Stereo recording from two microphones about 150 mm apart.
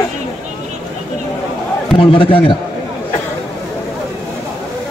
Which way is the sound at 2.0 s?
35° left (ahead or behind).